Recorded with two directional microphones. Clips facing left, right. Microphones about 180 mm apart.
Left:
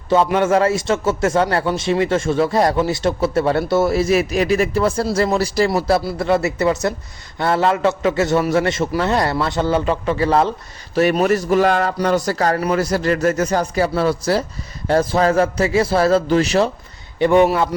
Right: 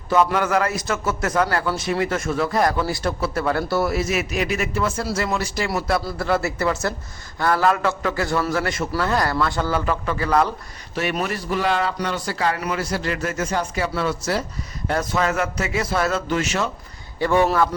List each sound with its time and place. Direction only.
0.1 s a man's voice: 25° left (ahead or behind)
6.1 s a man's voice: 20° left (ahead or behind)
10.9 s a man's voice: 40° left (ahead or behind)
17.2 s a man's voice: 20° left (ahead or behind)